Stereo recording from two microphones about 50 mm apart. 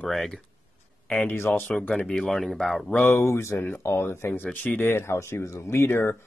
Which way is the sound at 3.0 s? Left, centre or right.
Left.